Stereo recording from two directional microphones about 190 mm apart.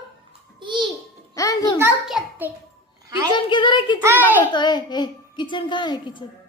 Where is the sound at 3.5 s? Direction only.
25° left (ahead or behind).